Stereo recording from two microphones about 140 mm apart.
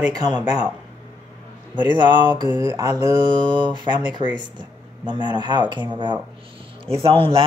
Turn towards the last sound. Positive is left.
turn(degrees=-40)  # may be behind; listen again after turning